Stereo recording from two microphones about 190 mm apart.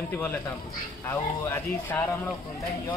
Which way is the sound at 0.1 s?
10° left (ahead or behind).